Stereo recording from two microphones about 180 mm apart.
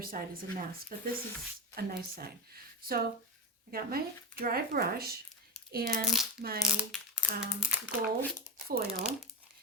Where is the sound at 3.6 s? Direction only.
55° right (ahead or behind).